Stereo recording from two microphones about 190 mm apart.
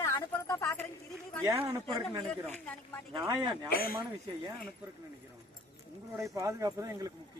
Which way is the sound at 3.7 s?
50° left (ahead or behind).